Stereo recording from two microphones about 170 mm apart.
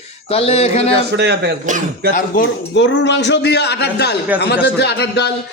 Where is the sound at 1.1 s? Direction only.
75° right (ahead or behind).